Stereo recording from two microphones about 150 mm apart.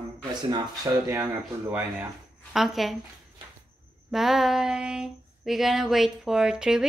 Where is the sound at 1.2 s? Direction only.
15° right (ahead or behind).